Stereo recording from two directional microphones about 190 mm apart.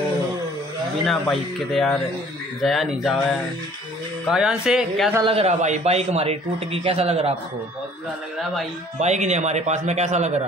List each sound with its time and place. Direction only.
1.0 s speech: centre (ahead or behind)
5.1 s a man's voice: 30° right (ahead or behind)
9.0 s a man's voice: 35° right (ahead or behind)